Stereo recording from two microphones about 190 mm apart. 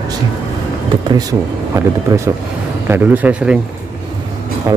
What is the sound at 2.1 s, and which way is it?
Speech, 20° right (ahead or behind).